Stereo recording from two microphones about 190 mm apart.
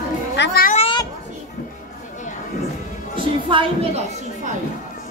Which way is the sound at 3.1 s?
25° right (ahead or behind).